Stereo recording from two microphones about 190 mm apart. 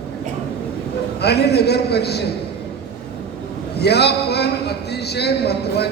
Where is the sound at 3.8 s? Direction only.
60° left (ahead or behind).